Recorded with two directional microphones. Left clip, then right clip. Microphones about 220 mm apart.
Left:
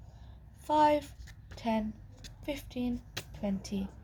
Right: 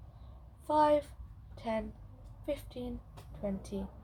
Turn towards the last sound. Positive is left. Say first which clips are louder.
# left 1 dB
turn(degrees=25)  # may be behind; listen again after turning